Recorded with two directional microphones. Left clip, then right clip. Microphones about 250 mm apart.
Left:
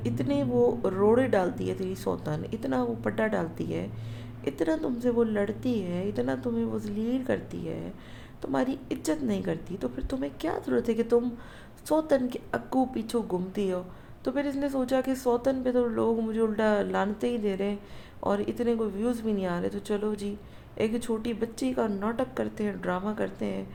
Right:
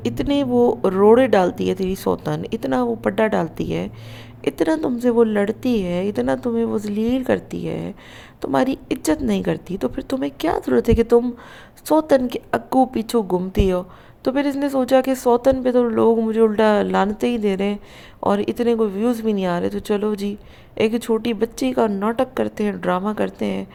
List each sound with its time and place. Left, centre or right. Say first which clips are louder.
0.0 s a woman's voice: right 8 dB; right